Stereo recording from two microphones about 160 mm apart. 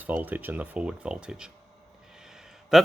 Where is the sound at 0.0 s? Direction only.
10° right (ahead or behind).